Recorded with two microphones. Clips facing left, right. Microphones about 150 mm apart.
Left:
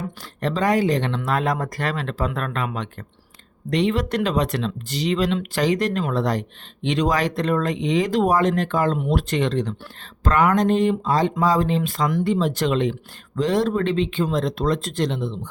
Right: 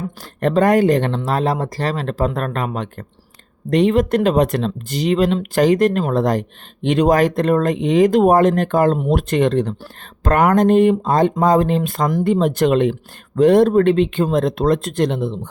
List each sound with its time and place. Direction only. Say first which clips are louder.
0.3 s speech: right 6 dB; 55° right (ahead or behind)
1.2 s speech: right 3 dB; 35° right (ahead or behind); by 15.4 s 55° right (ahead or behind)